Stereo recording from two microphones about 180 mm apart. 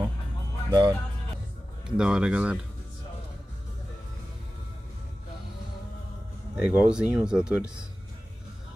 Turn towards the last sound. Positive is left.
turn(degrees=-5)  # may be behind; listen again after turning